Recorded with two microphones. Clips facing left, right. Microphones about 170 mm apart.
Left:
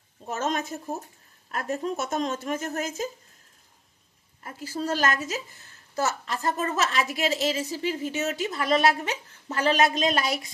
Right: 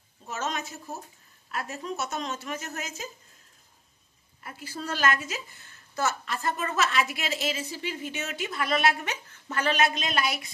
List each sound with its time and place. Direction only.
0.3 s speech: 50° left (ahead or behind)
4.4 s a woman's voice: 40° left (ahead or behind)